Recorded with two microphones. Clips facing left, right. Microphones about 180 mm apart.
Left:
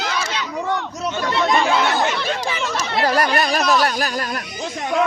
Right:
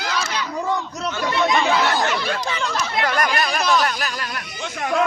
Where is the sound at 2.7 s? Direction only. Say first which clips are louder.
Left 5 dB; 30° left (ahead or behind).